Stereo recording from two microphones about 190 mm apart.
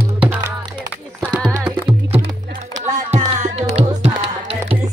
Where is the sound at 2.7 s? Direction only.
40° right (ahead or behind).